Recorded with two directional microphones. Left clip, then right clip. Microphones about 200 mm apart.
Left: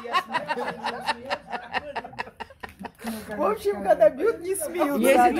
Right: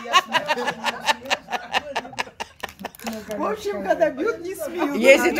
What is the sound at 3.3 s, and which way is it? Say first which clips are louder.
A woman's voice: left 2 dB; 45° left (ahead or behind).